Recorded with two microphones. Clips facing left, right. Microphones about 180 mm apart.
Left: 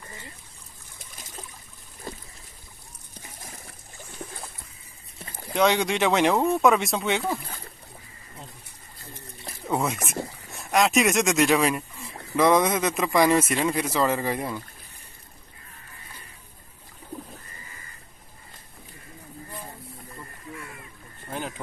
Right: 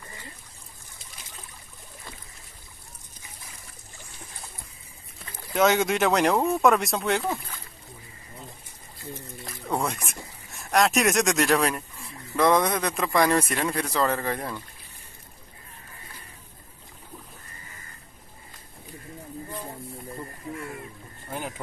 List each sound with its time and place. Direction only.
0.9 s boat: 45° left (ahead or behind)
3.2 s pigeon: 55° left (ahead or behind)
4.2 s boat: 50° left (ahead or behind)
5.5 s speech: centre (ahead or behind)
9.7 s a sound: centre (ahead or behind)
10.6 s speech: centre (ahead or behind)
21.3 s a sound: 10° right (ahead or behind)